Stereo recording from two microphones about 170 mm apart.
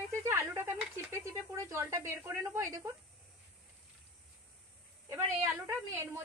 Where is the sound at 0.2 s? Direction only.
15° right (ahead or behind).